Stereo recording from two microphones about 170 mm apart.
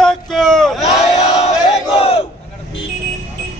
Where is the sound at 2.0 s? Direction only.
35° left (ahead or behind).